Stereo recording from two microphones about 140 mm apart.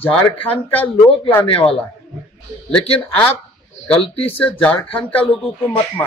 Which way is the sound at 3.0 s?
15° left (ahead or behind).